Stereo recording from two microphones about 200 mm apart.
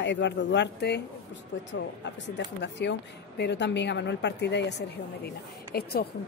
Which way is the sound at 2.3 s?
60° left (ahead or behind).